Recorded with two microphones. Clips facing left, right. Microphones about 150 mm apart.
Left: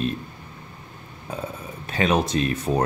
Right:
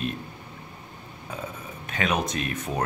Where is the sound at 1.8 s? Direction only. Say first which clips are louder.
Left 5 dB; 30° left (ahead or behind).